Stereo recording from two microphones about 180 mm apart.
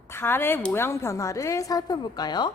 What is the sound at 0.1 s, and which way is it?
A woman's voice, 15° left (ahead or behind).